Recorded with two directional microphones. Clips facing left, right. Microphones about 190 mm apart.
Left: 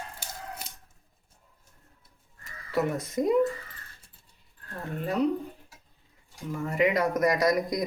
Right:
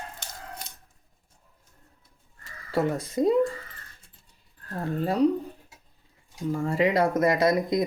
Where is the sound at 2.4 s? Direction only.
30° right (ahead or behind).